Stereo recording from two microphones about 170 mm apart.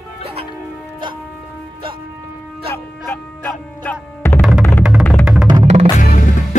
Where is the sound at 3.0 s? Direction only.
10° left (ahead or behind).